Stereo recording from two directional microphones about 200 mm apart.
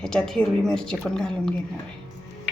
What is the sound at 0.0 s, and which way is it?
A woman's voice, centre (ahead or behind).